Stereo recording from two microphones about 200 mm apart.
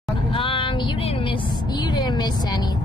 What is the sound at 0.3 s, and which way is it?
Vehicle, 25° left (ahead or behind).